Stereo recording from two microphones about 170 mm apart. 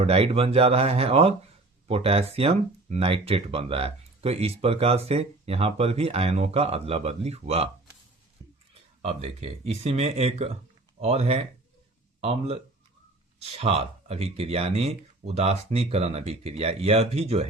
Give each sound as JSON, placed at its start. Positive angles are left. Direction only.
{"t": 0.0, "sound": "speech", "side_deg": -35}
{"t": 9.0, "sound": "speech", "side_deg": -40}